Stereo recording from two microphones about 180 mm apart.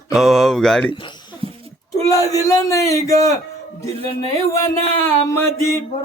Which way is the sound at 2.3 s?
20° left (ahead or behind).